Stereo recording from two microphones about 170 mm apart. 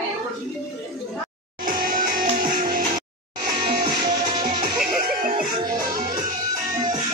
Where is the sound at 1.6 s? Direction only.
55° right (ahead or behind).